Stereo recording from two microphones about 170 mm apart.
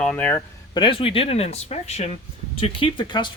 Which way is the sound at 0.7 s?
30° left (ahead or behind).